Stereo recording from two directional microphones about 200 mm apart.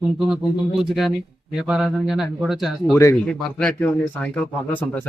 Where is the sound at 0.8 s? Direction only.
Centre (ahead or behind).